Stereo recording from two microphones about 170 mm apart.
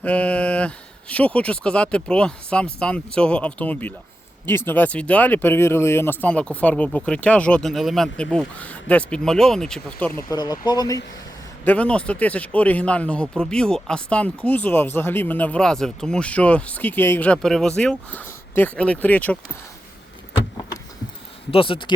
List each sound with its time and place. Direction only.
0.0 s speech: 10° left (ahead or behind)
10.2 s speech: 20° left (ahead or behind)
11.6 s speech: 10° left (ahead or behind)
21.5 s speech: 30° left (ahead or behind)